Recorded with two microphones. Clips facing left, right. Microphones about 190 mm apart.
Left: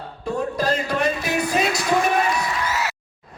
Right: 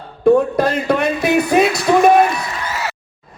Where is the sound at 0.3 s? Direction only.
60° right (ahead or behind).